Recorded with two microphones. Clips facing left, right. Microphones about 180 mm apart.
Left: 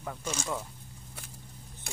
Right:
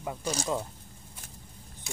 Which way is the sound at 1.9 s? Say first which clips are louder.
Right 3 dB; 55° left (ahead or behind).